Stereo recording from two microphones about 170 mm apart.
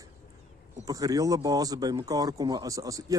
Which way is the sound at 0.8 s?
20° right (ahead or behind).